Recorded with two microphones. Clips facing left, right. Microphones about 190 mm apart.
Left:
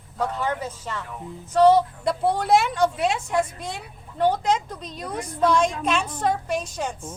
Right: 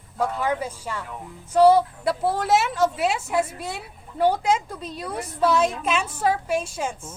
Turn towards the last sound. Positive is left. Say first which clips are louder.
# even
turn(degrees=-5)  # may be behind; listen again after turning